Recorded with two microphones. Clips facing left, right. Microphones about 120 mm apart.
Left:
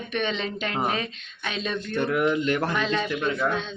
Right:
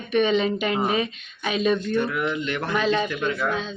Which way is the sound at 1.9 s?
50° left (ahead or behind).